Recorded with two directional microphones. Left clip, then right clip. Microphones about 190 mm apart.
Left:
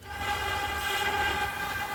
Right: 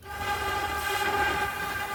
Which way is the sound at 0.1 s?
60° right (ahead or behind).